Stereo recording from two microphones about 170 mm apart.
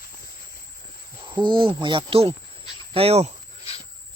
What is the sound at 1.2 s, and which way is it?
Speech, 25° right (ahead or behind).